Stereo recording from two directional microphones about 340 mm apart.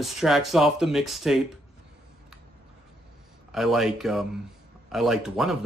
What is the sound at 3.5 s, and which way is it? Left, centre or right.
Speech, centre.